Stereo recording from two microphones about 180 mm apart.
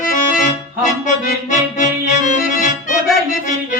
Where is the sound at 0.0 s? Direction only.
45° left (ahead or behind).